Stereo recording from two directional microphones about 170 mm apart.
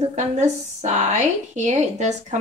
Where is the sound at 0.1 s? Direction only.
45° right (ahead or behind).